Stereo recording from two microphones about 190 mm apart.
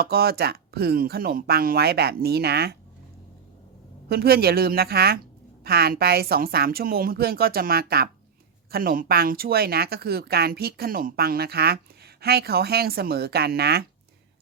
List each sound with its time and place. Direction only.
0.0 s speech: 55° right (ahead or behind)
4.1 s a woman's voice: 55° right (ahead or behind)